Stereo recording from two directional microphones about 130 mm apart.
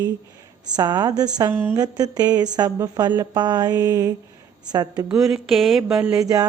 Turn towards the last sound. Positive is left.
turn(degrees=-30)  # may be behind; listen again after turning